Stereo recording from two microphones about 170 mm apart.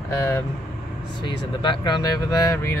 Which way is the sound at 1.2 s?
30° left (ahead or behind).